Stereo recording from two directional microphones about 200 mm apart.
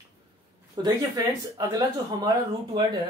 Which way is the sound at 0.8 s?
15° right (ahead or behind).